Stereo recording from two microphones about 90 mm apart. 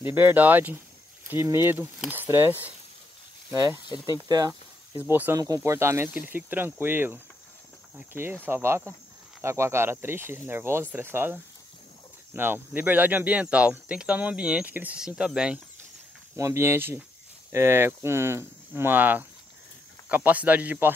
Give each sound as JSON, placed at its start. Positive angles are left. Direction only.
{"t": 0.0, "sound": "speech", "side_deg": -20}
{"t": 3.8, "sound": "speech", "side_deg": 55}
{"t": 4.3, "sound": "speech", "side_deg": -45}
{"t": 4.9, "sound": "speech", "side_deg": -20}
{"t": 5.3, "sound": "speech", "side_deg": -35}
{"t": 12.4, "sound": "speech", "side_deg": -25}
{"t": 16.3, "sound": "speech", "side_deg": -30}